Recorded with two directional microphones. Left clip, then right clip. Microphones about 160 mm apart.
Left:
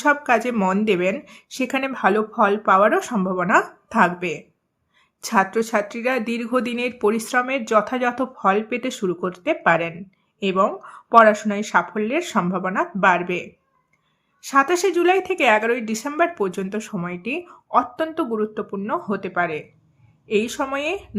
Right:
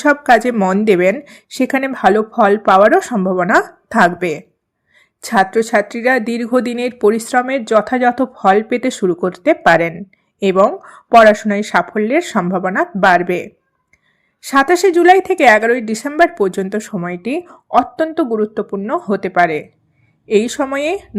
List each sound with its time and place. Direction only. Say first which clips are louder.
0.0 s speech: right 7 dB; 35° right (ahead or behind)